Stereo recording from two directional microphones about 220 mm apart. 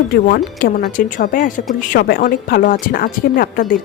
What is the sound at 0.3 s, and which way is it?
Speech, 45° left (ahead or behind).